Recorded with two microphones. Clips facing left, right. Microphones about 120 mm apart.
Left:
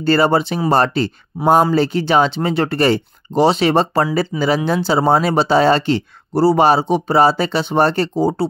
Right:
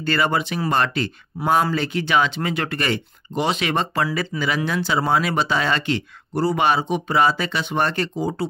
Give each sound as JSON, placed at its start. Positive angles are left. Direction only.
{"t": 0.0, "sound": "speech", "side_deg": 35}